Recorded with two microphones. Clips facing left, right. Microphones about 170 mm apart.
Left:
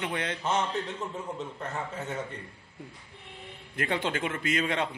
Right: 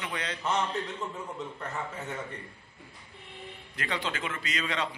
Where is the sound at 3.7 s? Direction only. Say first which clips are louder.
Left 4 dB; 50° left (ahead or behind).